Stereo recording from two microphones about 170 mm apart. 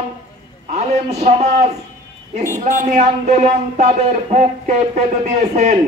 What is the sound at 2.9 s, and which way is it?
Speech, 40° right (ahead or behind).